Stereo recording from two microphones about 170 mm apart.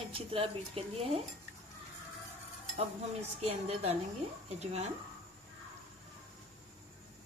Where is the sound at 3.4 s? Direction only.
40° right (ahead or behind).